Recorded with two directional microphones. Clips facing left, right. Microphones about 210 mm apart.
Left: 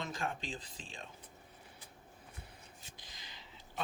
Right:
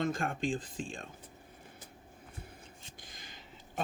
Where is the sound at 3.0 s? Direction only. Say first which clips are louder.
Right 3 dB; 50° right (ahead or behind).